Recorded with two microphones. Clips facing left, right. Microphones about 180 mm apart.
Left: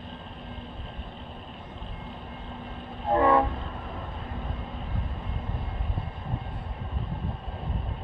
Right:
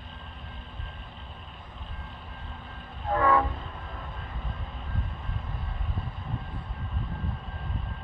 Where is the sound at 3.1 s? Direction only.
25° left (ahead or behind).